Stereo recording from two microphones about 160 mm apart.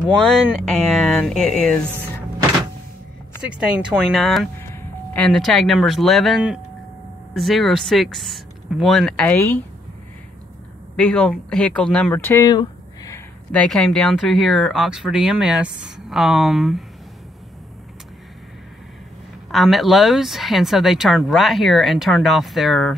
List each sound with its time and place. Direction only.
0.2 s speech: 5° left (ahead or behind)
3.4 s speech: 5° right (ahead or behind)
4.6 s speech: 15° left (ahead or behind)
11.0 s speech: 5° left (ahead or behind)
12.4 s a sound: 20° left (ahead or behind)
13.5 s speech: 5° left (ahead or behind)
19.5 s speech: centre (ahead or behind)